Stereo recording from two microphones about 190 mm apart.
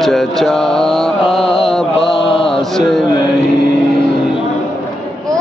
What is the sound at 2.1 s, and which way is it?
Mantra, 30° left (ahead or behind).